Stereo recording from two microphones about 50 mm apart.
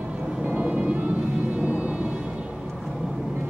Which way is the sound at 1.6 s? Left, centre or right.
Right.